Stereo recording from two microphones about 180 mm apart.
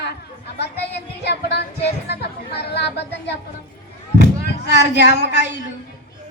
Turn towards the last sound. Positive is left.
turn(degrees=70)  # may be behind; listen again after turning